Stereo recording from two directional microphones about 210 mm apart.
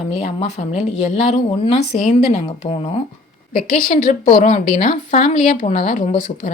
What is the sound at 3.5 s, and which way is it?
A woman's voice, 40° left (ahead or behind).